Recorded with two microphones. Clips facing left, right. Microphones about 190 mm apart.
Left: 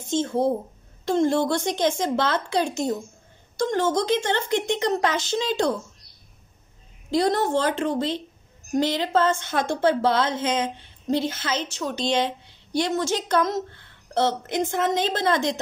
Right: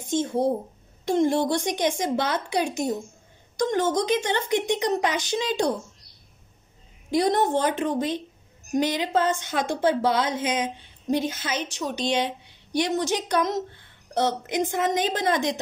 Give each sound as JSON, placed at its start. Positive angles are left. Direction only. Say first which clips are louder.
{"t": 0.0, "sound": "a woman's voice", "louder": "left 1 dB", "side_deg": -15}
{"t": 7.1, "sound": "a woman's voice", "louder": "even", "side_deg": -15}